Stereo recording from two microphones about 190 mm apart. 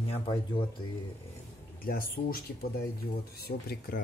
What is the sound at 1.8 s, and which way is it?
Speech, 50° left (ahead or behind).